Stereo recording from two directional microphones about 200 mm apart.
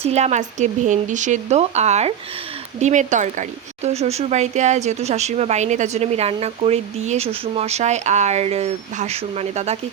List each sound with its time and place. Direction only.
0.0 s speech: 35° right (ahead or behind)